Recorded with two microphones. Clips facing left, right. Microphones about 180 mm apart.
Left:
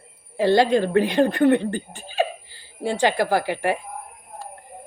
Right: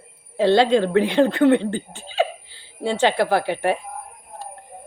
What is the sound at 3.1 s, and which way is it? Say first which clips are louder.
Speech: right 1 dB; 60° right (ahead or behind).